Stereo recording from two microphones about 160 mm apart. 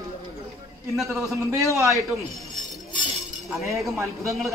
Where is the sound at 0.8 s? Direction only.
Centre (ahead or behind).